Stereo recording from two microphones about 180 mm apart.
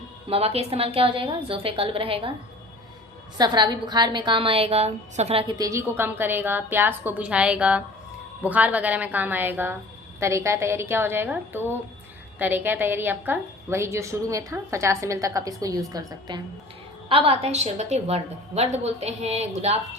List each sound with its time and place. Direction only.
0.3 s a woman's voice: 35° right (ahead or behind)
3.3 s a woman's voice: 25° right (ahead or behind)